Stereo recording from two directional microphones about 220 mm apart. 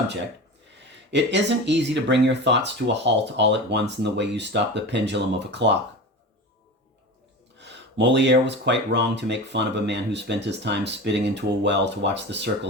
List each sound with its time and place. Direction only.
1.1 s speech: 55° right (ahead or behind)
7.6 s speech: 50° right (ahead or behind)